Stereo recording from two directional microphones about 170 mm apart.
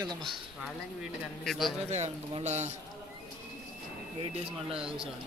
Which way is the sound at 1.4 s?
Centre (ahead or behind).